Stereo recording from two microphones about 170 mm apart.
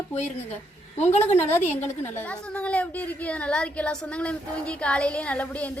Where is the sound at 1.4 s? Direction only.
10° left (ahead or behind).